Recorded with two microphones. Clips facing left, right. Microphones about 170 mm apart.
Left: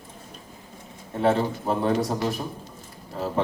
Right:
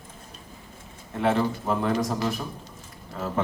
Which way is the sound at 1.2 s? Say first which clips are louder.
Left 1 dB; 30° left (ahead or behind).